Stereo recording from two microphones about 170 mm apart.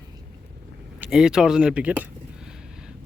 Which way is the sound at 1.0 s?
5° right (ahead or behind).